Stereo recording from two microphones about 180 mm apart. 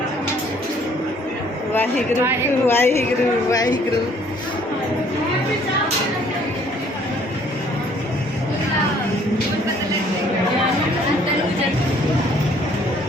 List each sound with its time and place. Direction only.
2.6 s a woman's voice: 10° left (ahead or behind)